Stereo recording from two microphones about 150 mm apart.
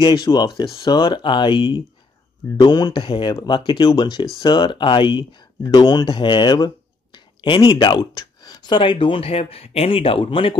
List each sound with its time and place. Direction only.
0.0 s speech: 30° left (ahead or behind)